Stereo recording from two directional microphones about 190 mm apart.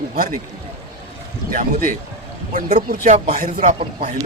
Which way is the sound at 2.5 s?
40° right (ahead or behind).